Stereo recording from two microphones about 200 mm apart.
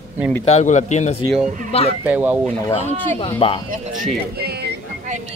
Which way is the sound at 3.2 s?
25° left (ahead or behind).